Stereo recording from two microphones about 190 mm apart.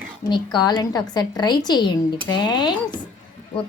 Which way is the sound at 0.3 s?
25° left (ahead or behind).